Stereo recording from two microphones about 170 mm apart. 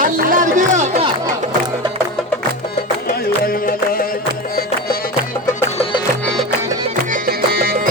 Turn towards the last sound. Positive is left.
turn(degrees=-60)  # may be behind; listen again after turning